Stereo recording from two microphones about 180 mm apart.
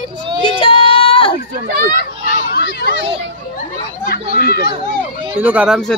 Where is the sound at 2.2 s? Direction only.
65° left (ahead or behind).